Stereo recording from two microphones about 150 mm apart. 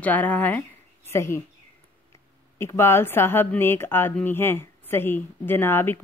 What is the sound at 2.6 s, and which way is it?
Speech, 15° left (ahead or behind).